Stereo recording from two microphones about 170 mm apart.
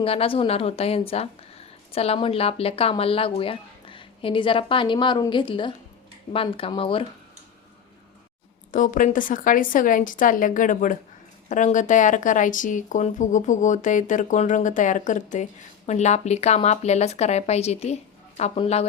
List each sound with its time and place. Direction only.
0.0 s a woman's voice: 35° left (ahead or behind)
8.7 s a woman's voice: 50° left (ahead or behind); by 18.9 s 35° left (ahead or behind)